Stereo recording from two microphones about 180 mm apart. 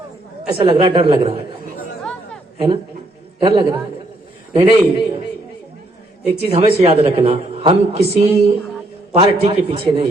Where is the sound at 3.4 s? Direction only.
30° right (ahead or behind).